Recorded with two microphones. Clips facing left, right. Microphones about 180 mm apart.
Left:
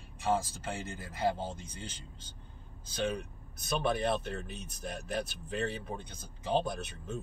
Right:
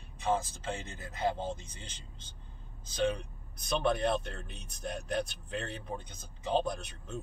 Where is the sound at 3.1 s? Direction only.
5° left (ahead or behind).